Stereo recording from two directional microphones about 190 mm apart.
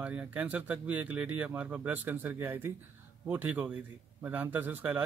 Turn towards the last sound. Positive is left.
turn(degrees=-10)  # may be behind; listen again after turning